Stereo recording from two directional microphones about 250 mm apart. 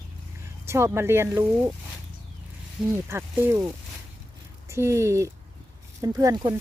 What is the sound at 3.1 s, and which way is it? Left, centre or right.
Speech, centre.